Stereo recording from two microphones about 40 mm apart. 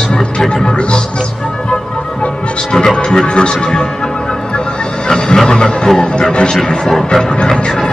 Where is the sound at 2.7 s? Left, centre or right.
Centre.